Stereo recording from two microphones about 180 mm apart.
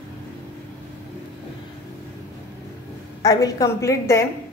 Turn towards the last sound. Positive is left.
turn(degrees=15)  # may be behind; listen again after turning